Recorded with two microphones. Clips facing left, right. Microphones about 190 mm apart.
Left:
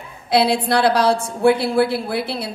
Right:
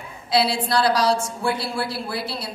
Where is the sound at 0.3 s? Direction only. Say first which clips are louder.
Left 4 dB; 55° left (ahead or behind).